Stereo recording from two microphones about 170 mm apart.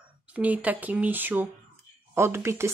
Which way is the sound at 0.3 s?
10° right (ahead or behind).